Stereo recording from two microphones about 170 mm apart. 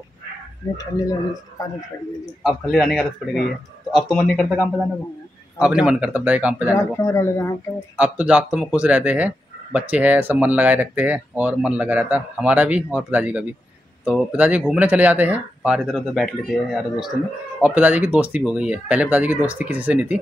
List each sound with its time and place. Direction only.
0.6 s speech: 20° left (ahead or behind)
2.4 s a man's voice: centre (ahead or behind)
5.6 s speech: 5° right (ahead or behind)
6.8 s speech: 15° left (ahead or behind)
8.0 s speech: 10° right (ahead or behind)